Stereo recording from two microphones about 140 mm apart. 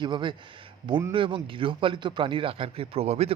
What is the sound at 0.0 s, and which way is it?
Speech, 35° right (ahead or behind).